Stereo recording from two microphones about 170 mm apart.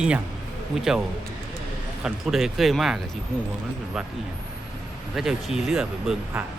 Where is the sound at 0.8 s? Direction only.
5° right (ahead or behind).